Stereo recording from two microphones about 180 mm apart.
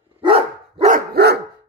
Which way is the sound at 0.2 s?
30° right (ahead or behind).